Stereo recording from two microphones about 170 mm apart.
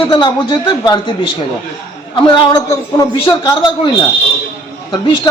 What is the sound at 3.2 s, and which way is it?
Speech, 25° left (ahead or behind).